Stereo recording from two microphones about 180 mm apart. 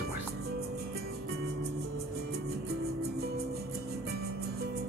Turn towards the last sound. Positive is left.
turn(degrees=-60)  # may be behind; listen again after turning